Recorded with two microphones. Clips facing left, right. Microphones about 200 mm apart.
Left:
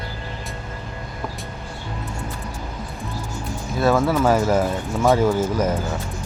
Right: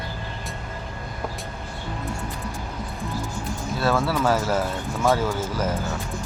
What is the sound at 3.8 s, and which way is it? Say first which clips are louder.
Speech: left 5 dB; 15° left (ahead or behind).